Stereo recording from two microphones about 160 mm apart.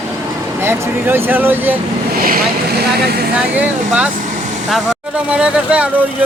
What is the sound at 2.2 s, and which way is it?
Speech, 65° right (ahead or behind).